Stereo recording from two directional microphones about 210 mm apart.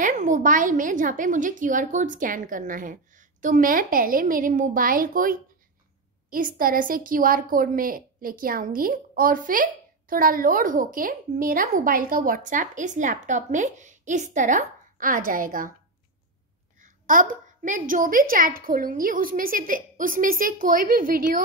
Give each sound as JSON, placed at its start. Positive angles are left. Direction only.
{"t": 0.0, "sound": "a woman's voice", "side_deg": -35}
{"t": 16.8, "sound": "a woman's voice", "side_deg": -40}